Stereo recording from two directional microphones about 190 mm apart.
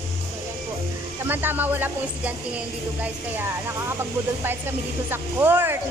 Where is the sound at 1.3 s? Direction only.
10° right (ahead or behind).